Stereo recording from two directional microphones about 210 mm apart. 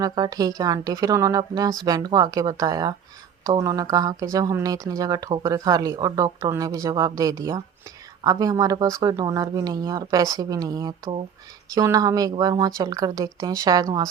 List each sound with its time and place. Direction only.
0.0 s speech: 20° right (ahead or behind)